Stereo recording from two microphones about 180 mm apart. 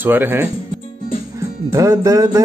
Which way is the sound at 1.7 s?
15° right (ahead or behind).